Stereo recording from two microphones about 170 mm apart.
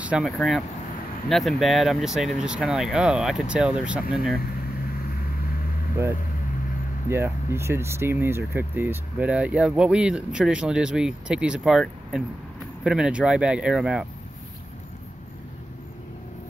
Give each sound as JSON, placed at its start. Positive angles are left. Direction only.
{"t": 0.0, "sound": "speech", "side_deg": -5}
{"t": 5.1, "sound": "vehicle", "side_deg": 60}
{"t": 7.1, "sound": "speech", "side_deg": -15}